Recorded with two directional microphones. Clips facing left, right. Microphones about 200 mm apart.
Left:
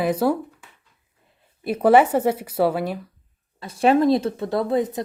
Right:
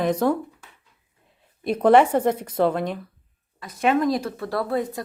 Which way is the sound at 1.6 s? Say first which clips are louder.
Even; 5° left (ahead or behind).